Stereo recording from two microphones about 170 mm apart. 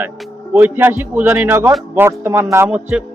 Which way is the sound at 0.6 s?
10° right (ahead or behind).